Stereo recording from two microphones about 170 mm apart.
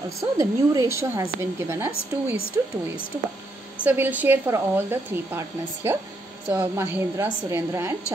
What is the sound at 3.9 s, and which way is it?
A woman's voice, 10° right (ahead or behind).